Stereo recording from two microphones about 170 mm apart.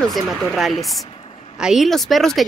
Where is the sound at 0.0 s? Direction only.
Centre (ahead or behind).